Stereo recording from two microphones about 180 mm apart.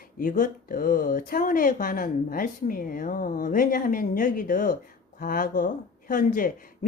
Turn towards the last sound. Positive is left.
turn(degrees=50)  # may be behind; listen again after turning